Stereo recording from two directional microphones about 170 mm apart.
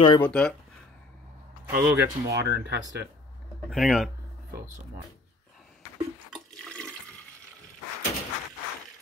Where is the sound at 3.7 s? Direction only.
Centre (ahead or behind).